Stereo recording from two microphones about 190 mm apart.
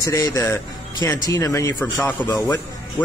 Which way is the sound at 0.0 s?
20° left (ahead or behind).